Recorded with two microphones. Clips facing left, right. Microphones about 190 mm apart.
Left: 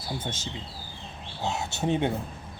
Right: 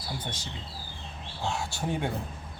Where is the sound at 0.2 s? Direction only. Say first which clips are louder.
Left 3 dB; 25° left (ahead or behind).